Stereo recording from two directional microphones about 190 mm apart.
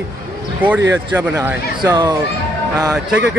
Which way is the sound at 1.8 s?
20° right (ahead or behind).